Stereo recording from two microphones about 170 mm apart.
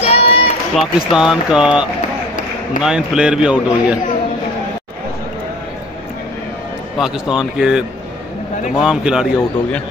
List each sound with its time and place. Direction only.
0.0 s run: 35° left (ahead or behind)
0.7 s a man's voice: 5° right (ahead or behind)
7.0 s speech: 5° right (ahead or behind)